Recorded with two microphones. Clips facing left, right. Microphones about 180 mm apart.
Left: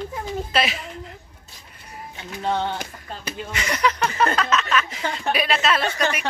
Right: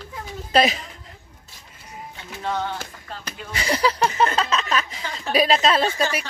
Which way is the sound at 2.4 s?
20° left (ahead or behind).